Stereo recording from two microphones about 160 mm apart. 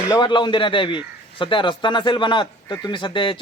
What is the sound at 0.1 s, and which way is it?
Speech, 30° left (ahead or behind).